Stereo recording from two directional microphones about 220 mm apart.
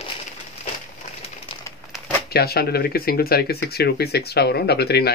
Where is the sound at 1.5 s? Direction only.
25° left (ahead or behind).